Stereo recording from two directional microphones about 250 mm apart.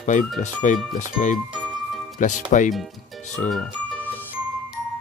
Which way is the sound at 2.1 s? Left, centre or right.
Left.